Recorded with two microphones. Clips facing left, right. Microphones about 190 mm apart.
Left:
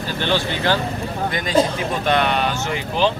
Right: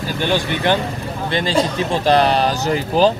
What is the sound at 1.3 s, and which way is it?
A man's voice, 30° right (ahead or behind).